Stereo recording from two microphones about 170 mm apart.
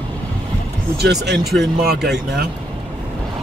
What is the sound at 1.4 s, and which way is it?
Speech, centre (ahead or behind).